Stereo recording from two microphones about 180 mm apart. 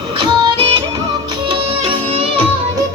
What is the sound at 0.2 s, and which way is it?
Music, 30° right (ahead or behind).